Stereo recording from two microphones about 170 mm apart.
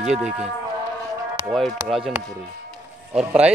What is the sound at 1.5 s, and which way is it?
Speech, centre (ahead or behind).